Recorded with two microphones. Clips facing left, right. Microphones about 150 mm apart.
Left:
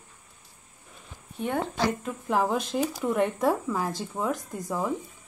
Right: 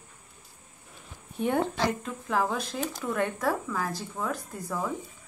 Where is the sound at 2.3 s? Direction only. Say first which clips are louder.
Left 3 dB; 15° left (ahead or behind).